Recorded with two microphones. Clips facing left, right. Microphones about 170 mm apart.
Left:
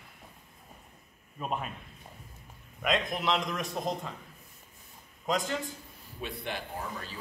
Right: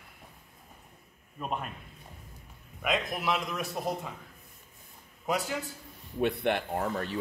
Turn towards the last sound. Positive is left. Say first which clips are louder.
# right 8 dB
turn(degrees=-65)  # may be behind; listen again after turning